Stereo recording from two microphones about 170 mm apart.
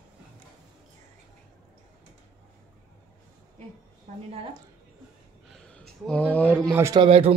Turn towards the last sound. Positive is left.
turn(degrees=-35)  # may be behind; listen again after turning